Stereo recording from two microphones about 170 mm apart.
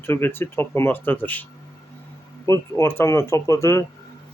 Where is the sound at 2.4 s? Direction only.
15° left (ahead or behind).